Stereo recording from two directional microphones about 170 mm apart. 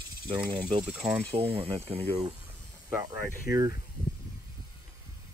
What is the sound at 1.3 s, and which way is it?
Speech, 35° right (ahead or behind).